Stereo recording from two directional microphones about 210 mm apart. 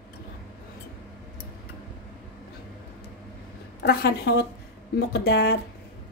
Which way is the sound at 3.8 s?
50° left (ahead or behind).